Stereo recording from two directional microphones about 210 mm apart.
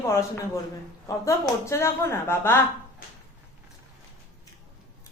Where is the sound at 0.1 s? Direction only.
15° left (ahead or behind).